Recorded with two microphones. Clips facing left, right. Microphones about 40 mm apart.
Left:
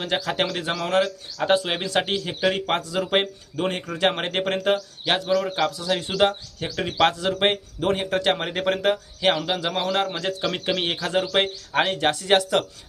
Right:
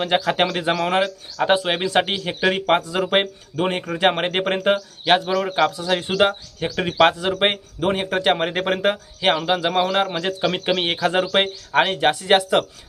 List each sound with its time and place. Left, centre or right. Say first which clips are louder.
0.0 s a man's voice: right 5 dB; right